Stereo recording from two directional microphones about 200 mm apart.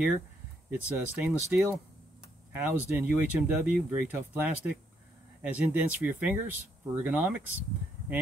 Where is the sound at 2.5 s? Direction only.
10° right (ahead or behind).